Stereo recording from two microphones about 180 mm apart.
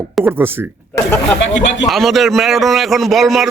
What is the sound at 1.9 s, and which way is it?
Rub, centre (ahead or behind).